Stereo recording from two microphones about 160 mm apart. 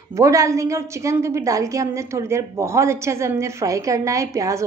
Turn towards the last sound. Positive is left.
turn(degrees=-20)  # may be behind; listen again after turning